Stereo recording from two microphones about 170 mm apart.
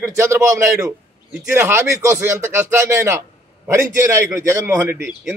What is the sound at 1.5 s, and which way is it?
A man's voice, 15° right (ahead or behind).